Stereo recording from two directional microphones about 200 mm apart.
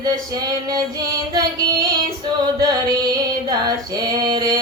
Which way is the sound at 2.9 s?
20° right (ahead or behind).